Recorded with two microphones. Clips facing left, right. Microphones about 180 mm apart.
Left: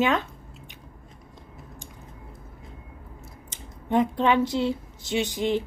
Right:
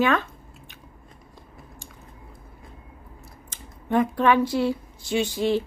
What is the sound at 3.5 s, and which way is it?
Speech, 20° left (ahead or behind).